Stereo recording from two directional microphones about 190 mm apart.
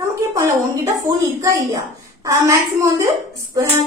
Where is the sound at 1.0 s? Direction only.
15° right (ahead or behind).